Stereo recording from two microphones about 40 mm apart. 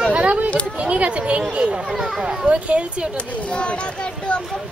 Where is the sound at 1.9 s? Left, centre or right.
Centre.